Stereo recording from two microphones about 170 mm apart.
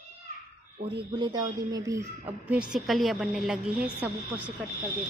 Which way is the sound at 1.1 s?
25° right (ahead or behind).